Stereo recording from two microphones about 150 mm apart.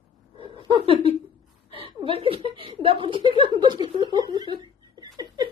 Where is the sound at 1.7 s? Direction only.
35° right (ahead or behind).